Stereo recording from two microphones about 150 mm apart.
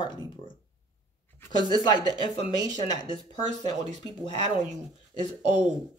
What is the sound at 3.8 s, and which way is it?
Speech, 50° right (ahead or behind).